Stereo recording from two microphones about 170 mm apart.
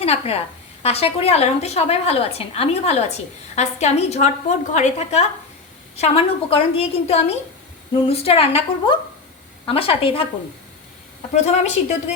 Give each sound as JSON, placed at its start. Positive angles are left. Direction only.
{"t": 0.0, "sound": "a woman's voice", "side_deg": 35}
{"t": 11.3, "sound": "a woman's voice", "side_deg": 40}